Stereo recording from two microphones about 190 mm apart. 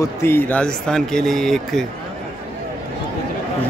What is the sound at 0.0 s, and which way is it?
A man's voice, 15° left (ahead or behind).